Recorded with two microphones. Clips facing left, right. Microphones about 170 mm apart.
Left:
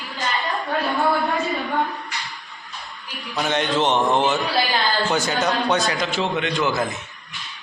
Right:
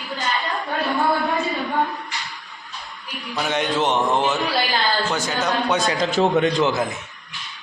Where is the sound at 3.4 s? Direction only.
5° right (ahead or behind).